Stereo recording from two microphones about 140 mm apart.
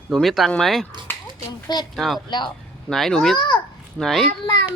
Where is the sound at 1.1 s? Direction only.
15° left (ahead or behind).